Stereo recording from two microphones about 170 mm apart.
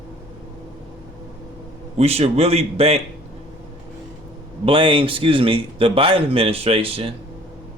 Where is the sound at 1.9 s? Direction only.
35° right (ahead or behind).